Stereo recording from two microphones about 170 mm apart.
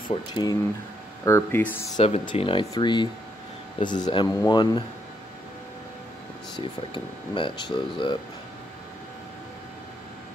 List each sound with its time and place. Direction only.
0.1 s speech: 25° left (ahead or behind)
2.0 s speech: 30° left (ahead or behind)
6.6 s speech: 30° left (ahead or behind)